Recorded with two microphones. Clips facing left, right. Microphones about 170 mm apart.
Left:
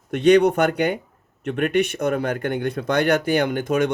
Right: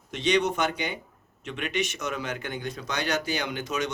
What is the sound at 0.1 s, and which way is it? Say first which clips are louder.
Speech: left 10 dB; 60° left (ahead or behind).